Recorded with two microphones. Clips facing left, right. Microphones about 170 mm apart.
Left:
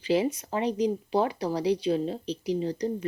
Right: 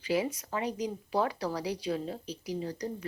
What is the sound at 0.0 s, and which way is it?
A woman's voice, 25° left (ahead or behind).